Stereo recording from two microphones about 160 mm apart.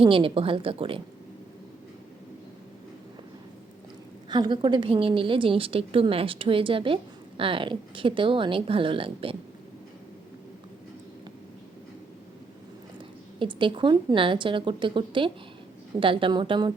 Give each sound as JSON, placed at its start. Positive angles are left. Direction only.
{"t": 0.0, "sound": "a woman's voice", "side_deg": -35}
{"t": 4.3, "sound": "a woman's voice", "side_deg": -25}
{"t": 13.4, "sound": "a woman's voice", "side_deg": -30}